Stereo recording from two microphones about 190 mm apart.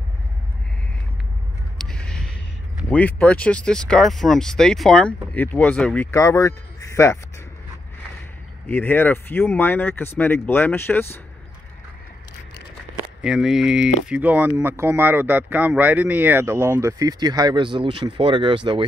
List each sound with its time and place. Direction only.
1.9 s a sound: 5° left (ahead or behind)
2.9 s speech: 10° left (ahead or behind)
6.1 s speech: 15° left (ahead or behind)
8.6 s speech: 10° left (ahead or behind)
13.2 s speech: 5° right (ahead or behind); by 18.9 s 25° right (ahead or behind)